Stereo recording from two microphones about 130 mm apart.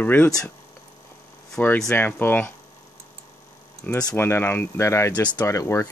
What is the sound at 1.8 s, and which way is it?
Speech, 10° left (ahead or behind).